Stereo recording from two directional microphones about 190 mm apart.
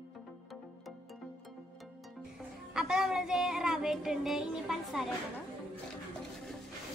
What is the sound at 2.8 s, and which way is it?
Child singing, 5° right (ahead or behind).